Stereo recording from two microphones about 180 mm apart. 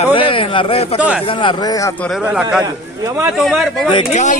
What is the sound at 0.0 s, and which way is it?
Speech, 30° left (ahead or behind).